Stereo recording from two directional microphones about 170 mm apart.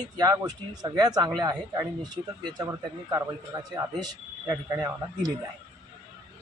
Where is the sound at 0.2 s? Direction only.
25° right (ahead or behind).